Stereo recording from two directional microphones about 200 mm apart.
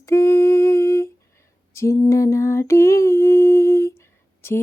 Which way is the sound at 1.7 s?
15° left (ahead or behind).